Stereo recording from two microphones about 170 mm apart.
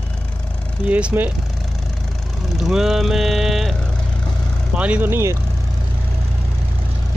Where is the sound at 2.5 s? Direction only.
5° right (ahead or behind).